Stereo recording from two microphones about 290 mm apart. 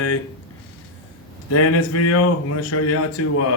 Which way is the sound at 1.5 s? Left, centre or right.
Left.